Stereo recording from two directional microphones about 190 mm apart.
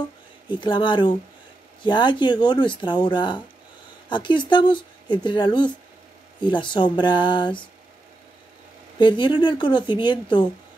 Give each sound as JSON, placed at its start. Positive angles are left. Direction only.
{"t": 0.6, "sound": "speech", "side_deg": 25}
{"t": 8.9, "sound": "speech", "side_deg": 25}